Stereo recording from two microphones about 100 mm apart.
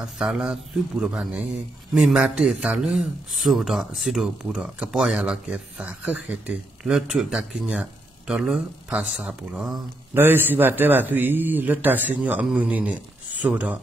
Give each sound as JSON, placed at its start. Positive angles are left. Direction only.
{"t": 0.0, "sound": "speech", "side_deg": -5}
{"t": 10.1, "sound": "a man's voice", "side_deg": -20}